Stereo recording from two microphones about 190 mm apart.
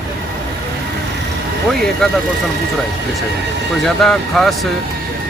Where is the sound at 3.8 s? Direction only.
Centre (ahead or behind).